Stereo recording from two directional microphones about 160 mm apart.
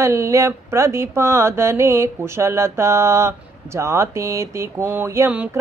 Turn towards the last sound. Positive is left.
turn(degrees=-10)  # may be behind; listen again after turning